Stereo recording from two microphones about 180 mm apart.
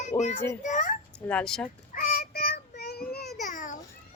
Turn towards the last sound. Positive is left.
turn(degrees=45)  # may be behind; listen again after turning